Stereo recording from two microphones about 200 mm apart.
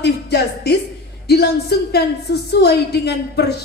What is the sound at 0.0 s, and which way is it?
A woman's voice, 55° left (ahead or behind).